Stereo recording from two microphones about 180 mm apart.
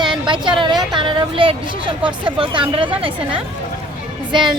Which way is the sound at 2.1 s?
25° right (ahead or behind).